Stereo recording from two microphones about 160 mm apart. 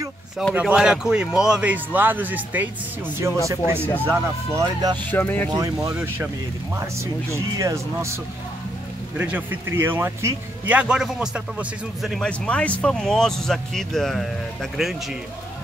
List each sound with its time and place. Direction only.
0.6 s a man's voice: 5° right (ahead or behind)
5.1 s speech: 10° left (ahead or behind)
5.5 s a man's voice: 20° right (ahead or behind)
9.2 s speech: 10° right (ahead or behind)